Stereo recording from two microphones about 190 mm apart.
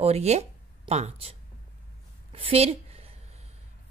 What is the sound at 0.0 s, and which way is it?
Speech, 35° right (ahead or behind).